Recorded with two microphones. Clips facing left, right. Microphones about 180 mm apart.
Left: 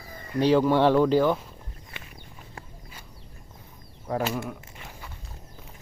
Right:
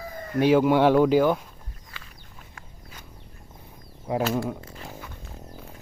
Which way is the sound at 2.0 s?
25° left (ahead or behind).